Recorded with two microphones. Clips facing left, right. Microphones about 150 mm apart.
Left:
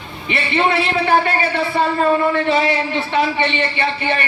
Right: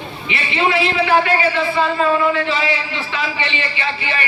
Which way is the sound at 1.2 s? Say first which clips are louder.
Right 2 dB; 55° left (ahead or behind).